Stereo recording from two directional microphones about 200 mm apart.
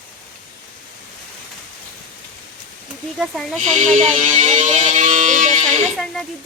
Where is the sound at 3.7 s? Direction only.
35° right (ahead or behind).